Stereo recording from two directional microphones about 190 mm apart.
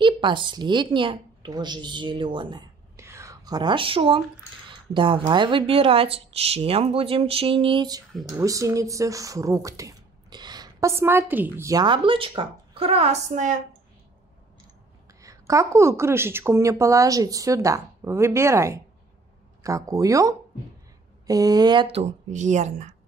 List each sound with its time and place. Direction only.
0.0 s a woman's voice: 25° right (ahead or behind); by 13.6 s 40° right (ahead or behind)
15.2 s a woman's voice: 15° right (ahead or behind); by 22.9 s 40° right (ahead or behind)